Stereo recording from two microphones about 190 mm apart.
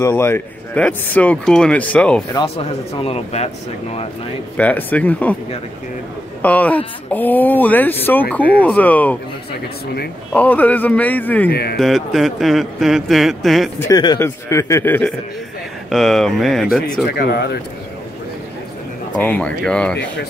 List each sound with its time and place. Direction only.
0.0 s a man's voice: 15° left (ahead or behind)
2.3 s speech: 30° left (ahead or behind)
4.6 s a man's voice: 10° left (ahead or behind)
6.4 s a man's voice: 10° left (ahead or behind)
10.3 s a man's voice: 10° left (ahead or behind)
11.5 s speech: 55° left (ahead or behind)
11.8 s a man's voice: centre (ahead or behind)
13.7 s a man's voice: 20° left (ahead or behind); by 17.0 s centre (ahead or behind)
17.0 s speech: 55° left (ahead or behind)
19.2 s a man's voice: 5° left (ahead or behind)